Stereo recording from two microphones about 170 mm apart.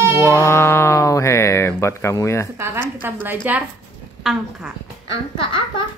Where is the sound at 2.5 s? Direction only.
15° right (ahead or behind).